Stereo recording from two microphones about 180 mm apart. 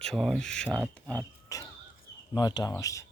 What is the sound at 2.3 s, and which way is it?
Speech, 20° left (ahead or behind).